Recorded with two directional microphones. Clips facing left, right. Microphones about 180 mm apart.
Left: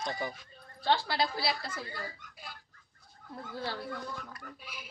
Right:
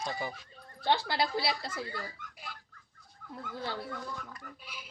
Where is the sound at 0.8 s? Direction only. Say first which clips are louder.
Even; 20° right (ahead or behind).